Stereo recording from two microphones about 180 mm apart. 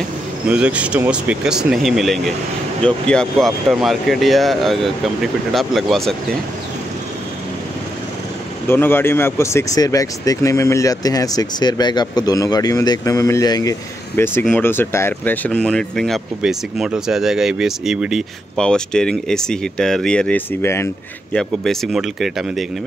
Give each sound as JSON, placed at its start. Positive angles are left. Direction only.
{"t": 0.5, "sound": "speech", "side_deg": -5}
{"t": 8.6, "sound": "speech", "side_deg": 10}
{"t": 21.4, "sound": "speech", "side_deg": 0}